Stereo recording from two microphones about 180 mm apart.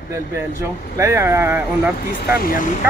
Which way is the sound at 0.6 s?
15° right (ahead or behind).